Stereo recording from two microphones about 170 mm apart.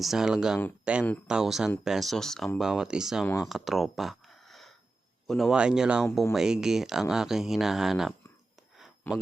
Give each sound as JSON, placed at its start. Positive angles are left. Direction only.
{"t": 0.0, "sound": "speech", "side_deg": 0}
{"t": 9.1, "sound": "speech", "side_deg": 10}